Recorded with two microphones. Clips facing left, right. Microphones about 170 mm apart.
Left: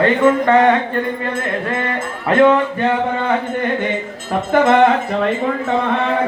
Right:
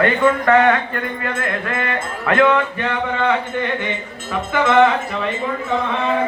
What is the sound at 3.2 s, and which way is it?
Speech, 45° left (ahead or behind).